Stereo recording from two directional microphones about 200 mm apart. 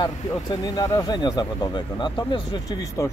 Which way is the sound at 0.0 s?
20° left (ahead or behind).